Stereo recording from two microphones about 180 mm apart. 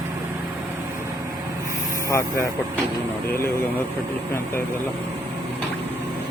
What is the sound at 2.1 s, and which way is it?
Speech, 15° left (ahead or behind).